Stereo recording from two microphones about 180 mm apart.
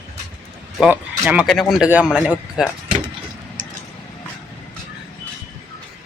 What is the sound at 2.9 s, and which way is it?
Vehicle, 30° right (ahead or behind).